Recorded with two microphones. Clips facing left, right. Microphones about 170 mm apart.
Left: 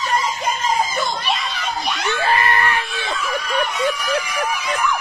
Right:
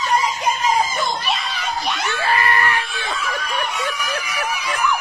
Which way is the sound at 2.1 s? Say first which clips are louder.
Left 1 dB; 20° left (ahead or behind).